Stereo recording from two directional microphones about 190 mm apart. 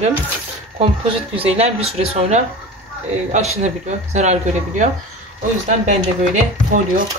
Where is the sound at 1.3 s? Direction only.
30° right (ahead or behind).